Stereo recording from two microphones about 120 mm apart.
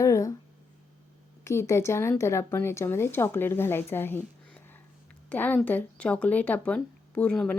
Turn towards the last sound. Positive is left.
turn(degrees=10)  # may be behind; listen again after turning